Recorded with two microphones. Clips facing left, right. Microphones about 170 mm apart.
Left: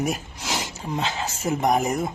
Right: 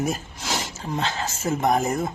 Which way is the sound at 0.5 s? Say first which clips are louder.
Even; centre (ahead or behind).